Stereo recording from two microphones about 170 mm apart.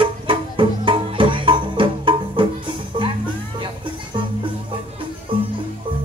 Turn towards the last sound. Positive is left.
turn(degrees=-30)  # may be behind; listen again after turning